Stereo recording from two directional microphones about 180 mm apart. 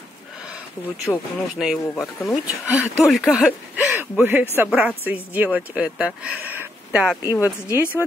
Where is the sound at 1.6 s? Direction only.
Centre (ahead or behind).